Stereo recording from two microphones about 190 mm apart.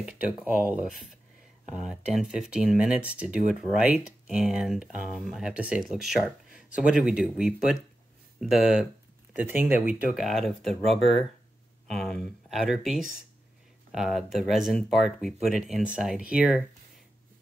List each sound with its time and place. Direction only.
0.0 s speech: 5° right (ahead or behind)